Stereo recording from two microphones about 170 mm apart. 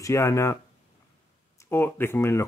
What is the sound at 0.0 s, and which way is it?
Speech, 15° left (ahead or behind).